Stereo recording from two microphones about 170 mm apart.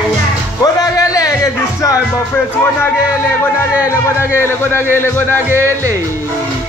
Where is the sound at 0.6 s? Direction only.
20° left (ahead or behind).